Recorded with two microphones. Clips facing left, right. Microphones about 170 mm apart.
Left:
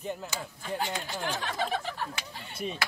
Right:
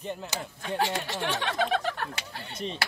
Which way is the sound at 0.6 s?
75° right (ahead or behind).